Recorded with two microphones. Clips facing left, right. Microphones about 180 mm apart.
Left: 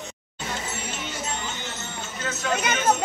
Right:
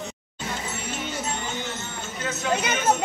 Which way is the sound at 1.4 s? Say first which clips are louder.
Right 3 dB; 50° right (ahead or behind).